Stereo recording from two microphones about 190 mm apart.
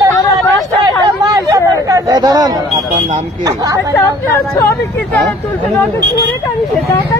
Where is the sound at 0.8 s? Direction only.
20° right (ahead or behind).